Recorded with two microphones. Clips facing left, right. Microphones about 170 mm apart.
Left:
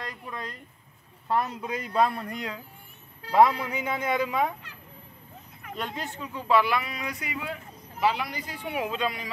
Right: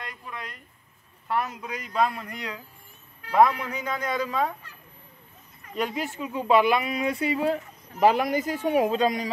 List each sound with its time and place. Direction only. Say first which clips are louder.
1.3 s a man's voice: left 1 dB; 30° left (ahead or behind)
5.8 s speech: right 6 dB; 5° right (ahead or behind)
6.2 s speech: right 3 dB; 20° right (ahead or behind); by 9.3 s 40° right (ahead or behind)